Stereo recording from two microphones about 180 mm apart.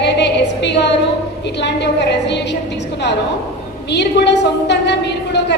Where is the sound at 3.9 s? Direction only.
70° left (ahead or behind).